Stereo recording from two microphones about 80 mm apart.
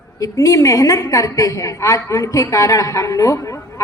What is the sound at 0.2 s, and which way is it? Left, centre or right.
A woman's voice, left.